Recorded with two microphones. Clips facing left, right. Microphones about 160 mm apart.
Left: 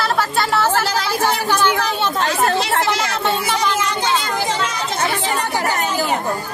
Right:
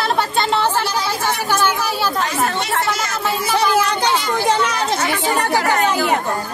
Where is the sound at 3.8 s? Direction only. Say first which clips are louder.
Right 2 dB; 65° right (ahead or behind).